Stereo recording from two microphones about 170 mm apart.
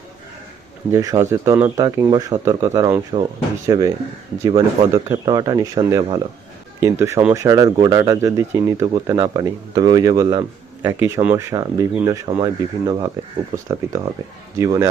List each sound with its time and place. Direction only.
0.9 s speech: 15° right (ahead or behind)